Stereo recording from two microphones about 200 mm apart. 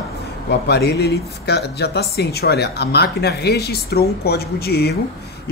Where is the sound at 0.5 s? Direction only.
55° left (ahead or behind).